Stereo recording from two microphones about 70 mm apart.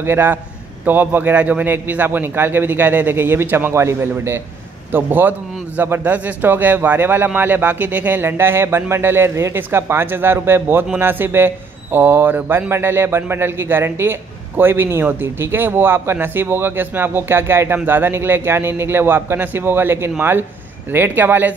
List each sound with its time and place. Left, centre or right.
0.0 s a man's voice: right
4.9 s a man's voice: right